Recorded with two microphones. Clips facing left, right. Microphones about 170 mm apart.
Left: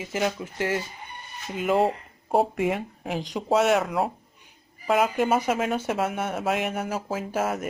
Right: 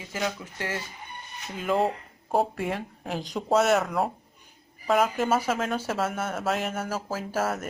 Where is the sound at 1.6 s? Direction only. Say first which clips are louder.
Left 3 dB; 5° left (ahead or behind).